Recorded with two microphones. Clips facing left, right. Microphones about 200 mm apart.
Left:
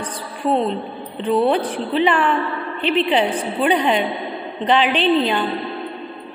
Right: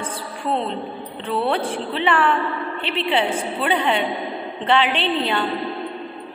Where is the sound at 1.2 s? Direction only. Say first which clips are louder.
Left 5 dB; 15° left (ahead or behind).